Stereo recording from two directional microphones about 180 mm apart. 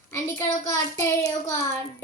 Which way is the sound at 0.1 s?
15° left (ahead or behind).